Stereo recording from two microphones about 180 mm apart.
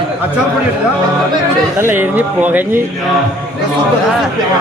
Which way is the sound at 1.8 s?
10° right (ahead or behind).